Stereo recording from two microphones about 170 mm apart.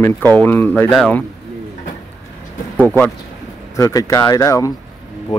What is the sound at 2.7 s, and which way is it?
Speech, 10° left (ahead or behind).